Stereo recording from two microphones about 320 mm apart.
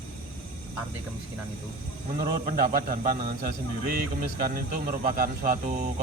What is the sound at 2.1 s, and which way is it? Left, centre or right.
Speech, right.